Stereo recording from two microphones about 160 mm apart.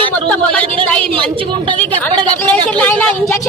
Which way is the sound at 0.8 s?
5° left (ahead or behind).